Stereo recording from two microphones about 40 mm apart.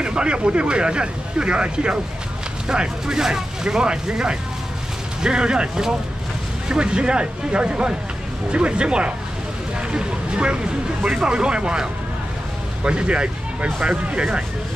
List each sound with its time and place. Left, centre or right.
0.0 s speech: right